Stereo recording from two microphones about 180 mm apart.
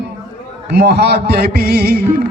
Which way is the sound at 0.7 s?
65° right (ahead or behind).